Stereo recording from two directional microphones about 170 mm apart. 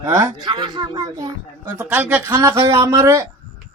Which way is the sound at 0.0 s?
20° right (ahead or behind).